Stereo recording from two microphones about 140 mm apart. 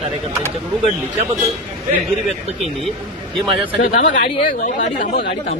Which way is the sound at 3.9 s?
65° left (ahead or behind).